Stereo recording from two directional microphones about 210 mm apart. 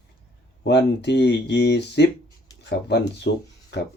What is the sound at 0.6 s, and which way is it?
Speech, 55° left (ahead or behind).